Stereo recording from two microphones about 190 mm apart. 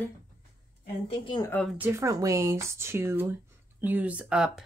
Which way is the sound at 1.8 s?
15° right (ahead or behind).